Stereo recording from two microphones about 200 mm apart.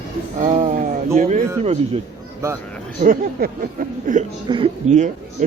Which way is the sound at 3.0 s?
45° right (ahead or behind).